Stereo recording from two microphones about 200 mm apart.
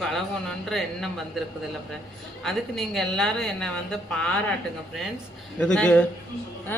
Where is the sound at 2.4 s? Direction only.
Centre (ahead or behind).